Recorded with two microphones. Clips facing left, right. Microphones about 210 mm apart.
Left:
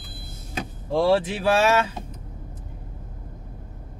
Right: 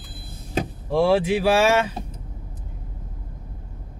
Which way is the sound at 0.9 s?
10° right (ahead or behind).